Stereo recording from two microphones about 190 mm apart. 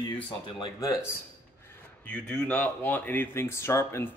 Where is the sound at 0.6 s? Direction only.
15° left (ahead or behind).